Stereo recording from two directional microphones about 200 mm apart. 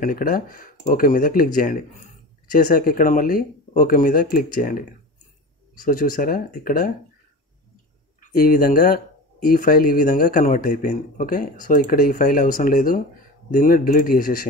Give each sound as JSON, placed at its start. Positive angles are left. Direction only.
{"t": 0.0, "sound": "speech", "side_deg": 45}
{"t": 5.9, "sound": "speech", "side_deg": 45}
{"t": 8.2, "sound": "speech", "side_deg": 45}